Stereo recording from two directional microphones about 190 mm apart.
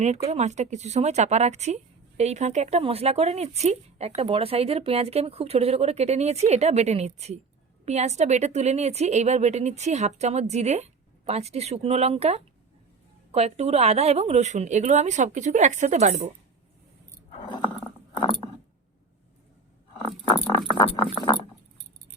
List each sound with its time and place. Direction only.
0.0 s speech: 35° right (ahead or behind)
17.4 s chewing: 25° left (ahead or behind)
20.2 s patter: 10° left (ahead or behind)